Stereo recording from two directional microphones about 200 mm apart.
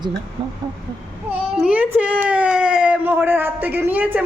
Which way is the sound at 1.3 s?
5° right (ahead or behind).